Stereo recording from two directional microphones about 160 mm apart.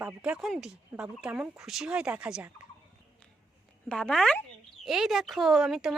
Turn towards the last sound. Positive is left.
turn(degrees=-5)  # may be behind; listen again after turning